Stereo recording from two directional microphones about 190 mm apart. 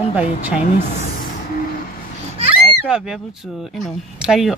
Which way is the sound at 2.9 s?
5° right (ahead or behind).